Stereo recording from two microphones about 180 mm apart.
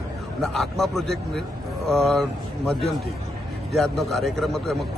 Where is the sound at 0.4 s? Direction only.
Centre (ahead or behind).